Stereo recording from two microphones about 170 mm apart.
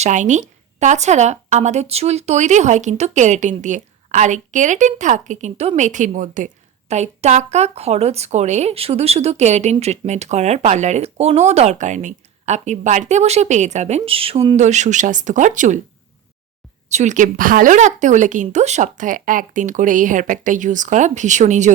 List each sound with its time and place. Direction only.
0.0 s a woman's voice: 45° right (ahead or behind)
16.9 s a woman's voice: 45° right (ahead or behind)